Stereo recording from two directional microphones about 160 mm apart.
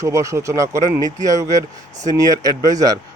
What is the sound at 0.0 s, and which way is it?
Speech, 20° right (ahead or behind).